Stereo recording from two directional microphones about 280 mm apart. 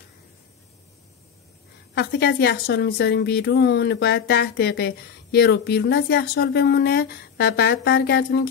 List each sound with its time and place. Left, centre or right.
2.0 s a woman's voice: left